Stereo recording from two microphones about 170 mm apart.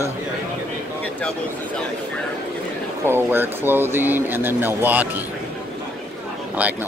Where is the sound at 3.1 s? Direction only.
15° right (ahead or behind).